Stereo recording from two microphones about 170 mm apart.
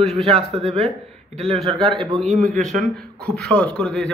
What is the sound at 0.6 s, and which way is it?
Speech, 35° right (ahead or behind).